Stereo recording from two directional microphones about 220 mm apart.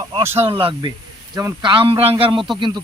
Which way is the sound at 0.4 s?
25° right (ahead or behind).